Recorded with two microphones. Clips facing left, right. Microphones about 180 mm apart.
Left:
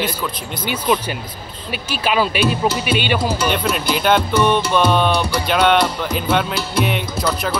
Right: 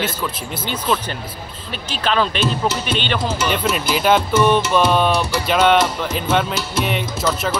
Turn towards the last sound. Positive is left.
turn(degrees=0)  # may be behind; listen again after turning